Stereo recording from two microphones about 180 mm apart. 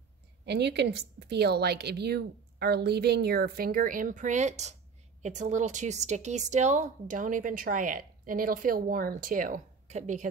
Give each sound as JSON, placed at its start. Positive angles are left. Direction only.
{"t": 0.5, "sound": "a woman's voice", "side_deg": -70}